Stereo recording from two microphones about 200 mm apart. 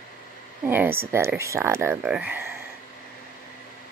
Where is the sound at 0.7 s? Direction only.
10° right (ahead or behind).